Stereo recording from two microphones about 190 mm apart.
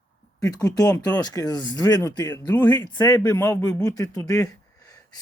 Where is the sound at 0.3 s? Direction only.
20° left (ahead or behind).